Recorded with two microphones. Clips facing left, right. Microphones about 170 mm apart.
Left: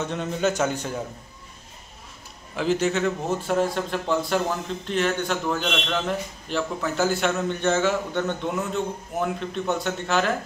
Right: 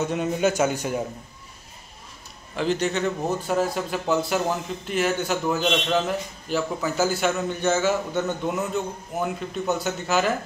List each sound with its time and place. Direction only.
0.0 s speech: 10° right (ahead or behind)
2.5 s a man's voice: centre (ahead or behind)